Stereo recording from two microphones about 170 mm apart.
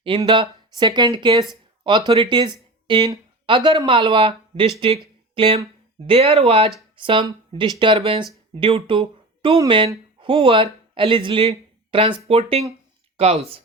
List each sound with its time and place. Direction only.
0.0 s speech: 30° right (ahead or behind)